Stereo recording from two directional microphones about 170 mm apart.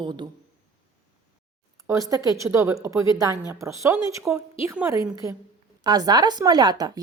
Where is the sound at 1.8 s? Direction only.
20° right (ahead or behind).